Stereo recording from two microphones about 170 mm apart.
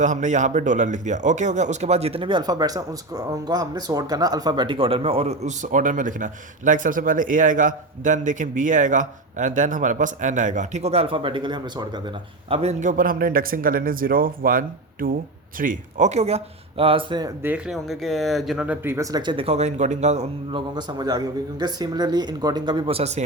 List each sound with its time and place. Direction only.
0.0 s speech: 45° right (ahead or behind); by 11.9 s 25° right (ahead or behind)
12.5 s a man's voice: 40° right (ahead or behind)
17.4 s speech: 5° right (ahead or behind); by 20.2 s 40° right (ahead or behind)
20.5 s speech: 25° right (ahead or behind)